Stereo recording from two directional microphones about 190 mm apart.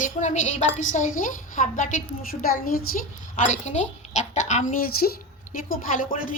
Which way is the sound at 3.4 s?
40° left (ahead or behind).